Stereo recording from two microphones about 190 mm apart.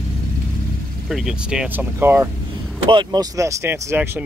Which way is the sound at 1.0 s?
Centre (ahead or behind).